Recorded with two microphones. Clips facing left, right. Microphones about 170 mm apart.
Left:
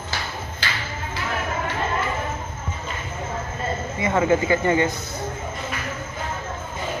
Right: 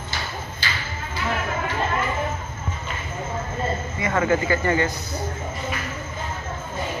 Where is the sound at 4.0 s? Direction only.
20° left (ahead or behind).